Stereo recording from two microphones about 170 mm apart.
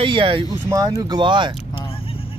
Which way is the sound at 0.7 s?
20° right (ahead or behind).